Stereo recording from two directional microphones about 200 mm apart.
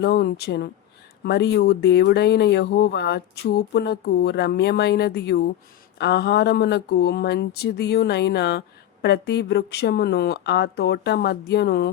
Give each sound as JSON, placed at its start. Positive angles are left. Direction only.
{"t": 0.0, "sound": "speech", "side_deg": 50}